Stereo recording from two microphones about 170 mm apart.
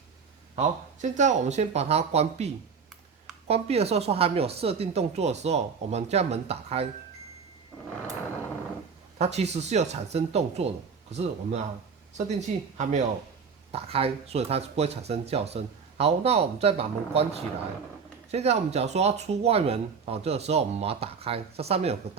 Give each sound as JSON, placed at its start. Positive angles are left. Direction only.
{"t": 1.0, "sound": "speech", "side_deg": -45}
{"t": 9.1, "sound": "speech", "side_deg": -40}